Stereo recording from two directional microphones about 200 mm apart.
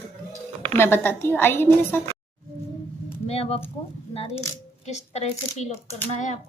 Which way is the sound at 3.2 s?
30° left (ahead or behind).